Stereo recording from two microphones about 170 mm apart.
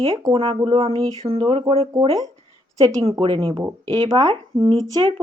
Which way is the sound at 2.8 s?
20° right (ahead or behind).